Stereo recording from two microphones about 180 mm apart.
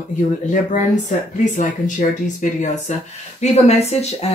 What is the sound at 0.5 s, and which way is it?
Speech, 45° left (ahead or behind).